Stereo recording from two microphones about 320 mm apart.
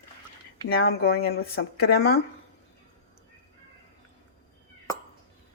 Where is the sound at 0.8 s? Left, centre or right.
Left.